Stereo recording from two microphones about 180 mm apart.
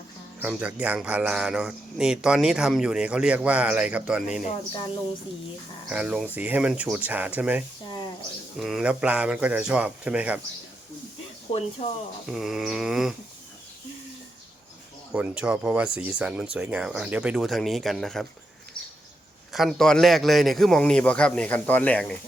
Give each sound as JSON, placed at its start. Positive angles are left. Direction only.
{"t": 0.3, "sound": "speech", "side_deg": -5}
{"t": 5.9, "sound": "speech", "side_deg": -5}
{"t": 11.5, "sound": "speech", "side_deg": 35}
{"t": 12.2, "sound": "speech", "side_deg": -5}
{"t": 15.1, "sound": "speech", "side_deg": -5}
{"t": 19.5, "sound": "speech", "side_deg": 0}